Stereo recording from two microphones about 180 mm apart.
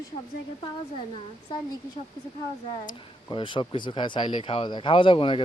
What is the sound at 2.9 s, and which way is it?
Speech, 25° left (ahead or behind).